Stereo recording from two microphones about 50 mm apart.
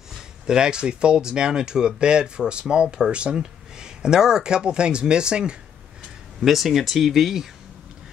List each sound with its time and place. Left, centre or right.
0.1 s speech: centre
6.4 s speech: centre